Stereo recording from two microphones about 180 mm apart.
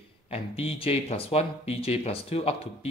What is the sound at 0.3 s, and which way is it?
Speech, 35° left (ahead or behind).